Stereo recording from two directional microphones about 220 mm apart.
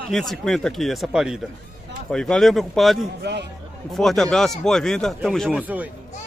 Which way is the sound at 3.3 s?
50° right (ahead or behind).